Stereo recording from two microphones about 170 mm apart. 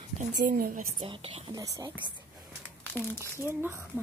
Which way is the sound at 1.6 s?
20° right (ahead or behind).